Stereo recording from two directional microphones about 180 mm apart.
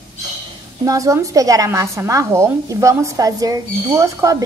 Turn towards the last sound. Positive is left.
turn(degrees=-15)  # may be behind; listen again after turning